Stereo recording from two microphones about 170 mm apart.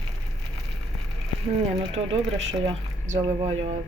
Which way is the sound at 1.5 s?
35° right (ahead or behind).